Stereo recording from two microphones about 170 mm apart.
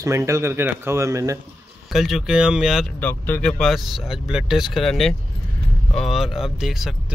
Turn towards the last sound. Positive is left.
turn(degrees=0)  # may be behind; listen again after turning